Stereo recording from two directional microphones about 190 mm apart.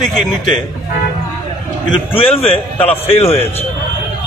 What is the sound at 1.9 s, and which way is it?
Speech, 30° left (ahead or behind).